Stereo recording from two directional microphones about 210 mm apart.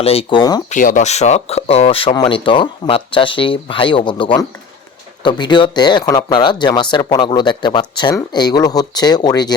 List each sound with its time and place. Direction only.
0.0 s speech: 25° left (ahead or behind)
0.7 s speech: 40° left (ahead or behind); by 9.6 s 20° left (ahead or behind)